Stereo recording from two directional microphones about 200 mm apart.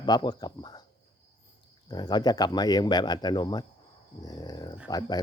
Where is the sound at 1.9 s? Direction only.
20° left (ahead or behind).